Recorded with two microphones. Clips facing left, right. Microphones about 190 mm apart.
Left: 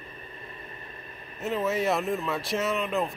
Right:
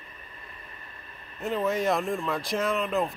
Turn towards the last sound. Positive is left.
turn(degrees=0)  # may be behind; listen again after turning